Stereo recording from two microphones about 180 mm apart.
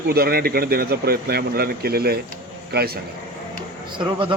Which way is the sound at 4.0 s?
30° right (ahead or behind).